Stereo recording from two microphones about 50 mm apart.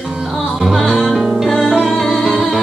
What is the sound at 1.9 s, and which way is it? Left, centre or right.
Music, centre.